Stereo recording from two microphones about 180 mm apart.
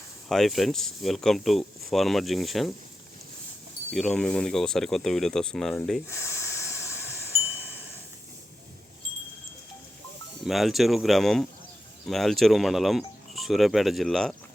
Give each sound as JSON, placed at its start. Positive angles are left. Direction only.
{"t": 0.3, "sound": "speech", "side_deg": 0}
{"t": 3.9, "sound": "speech", "side_deg": 5}
{"t": 6.1, "sound": "hiss", "side_deg": 15}
{"t": 10.4, "sound": "speech", "side_deg": 0}